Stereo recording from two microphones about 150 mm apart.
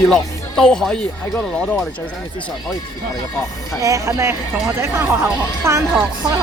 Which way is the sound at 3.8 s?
20° right (ahead or behind).